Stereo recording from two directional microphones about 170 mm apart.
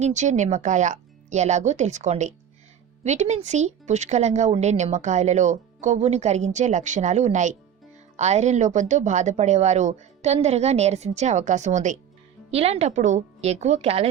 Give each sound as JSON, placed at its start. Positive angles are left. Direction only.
{"t": 0.0, "sound": "a woman's voice", "side_deg": -45}